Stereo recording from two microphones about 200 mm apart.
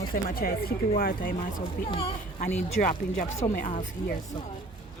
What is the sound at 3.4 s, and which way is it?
Speech, 15° left (ahead or behind).